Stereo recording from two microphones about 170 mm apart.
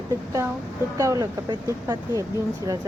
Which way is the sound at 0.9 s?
20° right (ahead or behind).